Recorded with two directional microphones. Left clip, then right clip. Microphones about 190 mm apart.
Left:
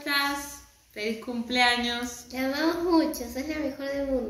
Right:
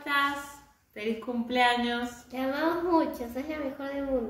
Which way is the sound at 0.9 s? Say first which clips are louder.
Left 1 dB; 5° right (ahead or behind).